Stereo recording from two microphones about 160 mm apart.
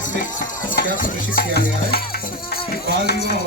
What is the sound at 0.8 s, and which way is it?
Speech, 55° left (ahead or behind).